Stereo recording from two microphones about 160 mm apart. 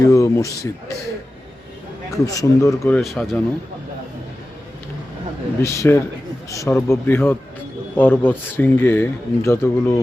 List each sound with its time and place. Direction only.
0.0 s speech: 20° left (ahead or behind)
2.0 s speech: 20° left (ahead or behind)
3.0 s speech: centre (ahead or behind)
5.6 s speech: 15° left (ahead or behind)